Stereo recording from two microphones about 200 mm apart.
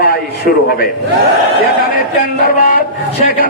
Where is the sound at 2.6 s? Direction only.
45° left (ahead or behind).